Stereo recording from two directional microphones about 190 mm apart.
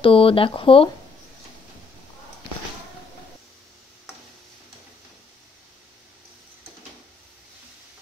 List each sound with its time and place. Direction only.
0.0 s speech: 30° left (ahead or behind)